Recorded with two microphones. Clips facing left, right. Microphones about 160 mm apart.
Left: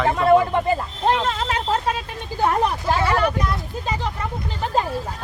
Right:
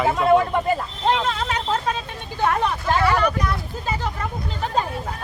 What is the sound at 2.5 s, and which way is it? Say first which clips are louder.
Speech: left 1 dB; 30° left (ahead or behind).